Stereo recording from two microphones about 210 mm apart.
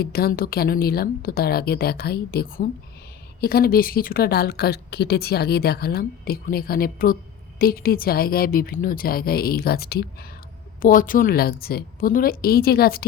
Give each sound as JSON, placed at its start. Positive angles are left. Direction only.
{"t": 0.0, "sound": "a woman's voice", "side_deg": 45}